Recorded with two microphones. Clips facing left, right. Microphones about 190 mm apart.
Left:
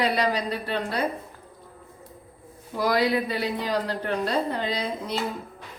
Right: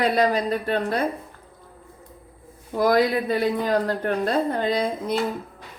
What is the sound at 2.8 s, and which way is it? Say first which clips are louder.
A woman's voice: right 4 dB; 50° right (ahead or behind).